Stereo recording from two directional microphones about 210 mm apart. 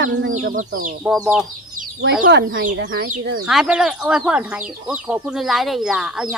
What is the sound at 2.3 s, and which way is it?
Speech, 55° right (ahead or behind).